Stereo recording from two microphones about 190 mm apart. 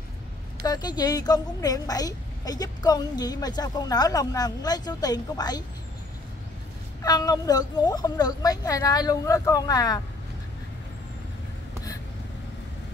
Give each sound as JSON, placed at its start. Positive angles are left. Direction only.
{"t": 0.7, "sound": "a woman's voice", "side_deg": 20}
{"t": 7.0, "sound": "a woman's voice", "side_deg": 20}